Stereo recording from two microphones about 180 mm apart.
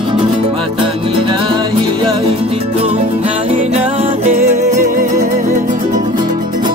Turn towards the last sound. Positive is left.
turn(degrees=-40)  # may be behind; listen again after turning